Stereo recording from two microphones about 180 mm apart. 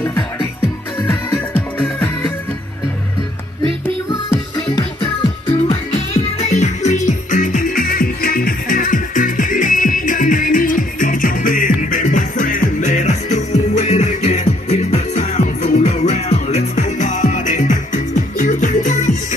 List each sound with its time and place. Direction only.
4.1 s music: 20° left (ahead or behind)
6.3 s music: 40° left (ahead or behind)